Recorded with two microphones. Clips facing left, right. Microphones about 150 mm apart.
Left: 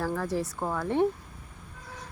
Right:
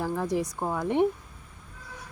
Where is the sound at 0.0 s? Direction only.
15° right (ahead or behind).